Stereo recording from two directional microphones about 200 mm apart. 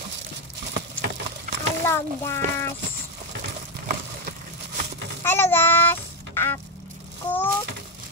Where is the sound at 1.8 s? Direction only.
10° left (ahead or behind).